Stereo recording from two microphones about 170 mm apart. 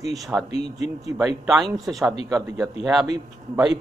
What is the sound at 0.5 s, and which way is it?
Speech, 40° left (ahead or behind).